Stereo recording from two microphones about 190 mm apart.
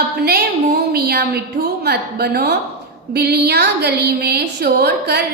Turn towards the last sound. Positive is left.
turn(degrees=-60)  # may be behind; listen again after turning